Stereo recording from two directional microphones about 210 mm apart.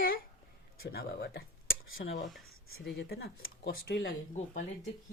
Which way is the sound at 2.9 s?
50° left (ahead or behind).